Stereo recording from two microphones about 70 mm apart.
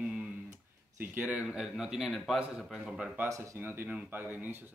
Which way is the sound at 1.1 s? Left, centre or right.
Centre.